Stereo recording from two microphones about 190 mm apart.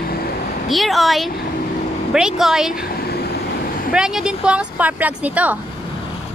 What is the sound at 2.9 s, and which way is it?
Vehicle, 55° left (ahead or behind).